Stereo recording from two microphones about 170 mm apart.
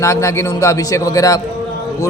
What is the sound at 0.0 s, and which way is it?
A man's voice, 20° left (ahead or behind).